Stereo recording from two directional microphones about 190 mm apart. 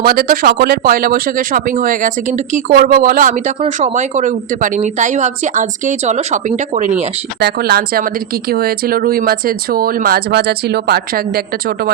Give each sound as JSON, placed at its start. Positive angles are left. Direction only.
{"t": 0.0, "sound": "speech", "side_deg": -50}
{"t": 3.6, "sound": "a woman's voice", "side_deg": -35}
{"t": 7.3, "sound": "speech", "side_deg": -55}